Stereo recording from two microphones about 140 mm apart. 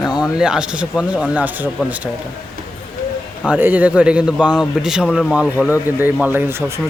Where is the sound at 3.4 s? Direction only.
10° right (ahead or behind).